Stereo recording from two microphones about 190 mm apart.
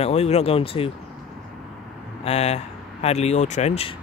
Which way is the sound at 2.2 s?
35° left (ahead or behind).